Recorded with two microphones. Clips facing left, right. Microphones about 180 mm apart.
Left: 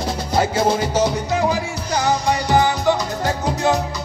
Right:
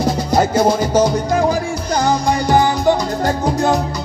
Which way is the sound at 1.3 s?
50° right (ahead or behind).